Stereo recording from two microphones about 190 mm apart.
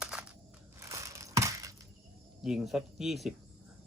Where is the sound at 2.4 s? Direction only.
Centre (ahead or behind).